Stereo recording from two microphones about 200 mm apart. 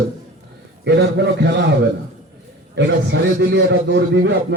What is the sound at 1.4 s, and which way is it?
A man's voice, 60° right (ahead or behind).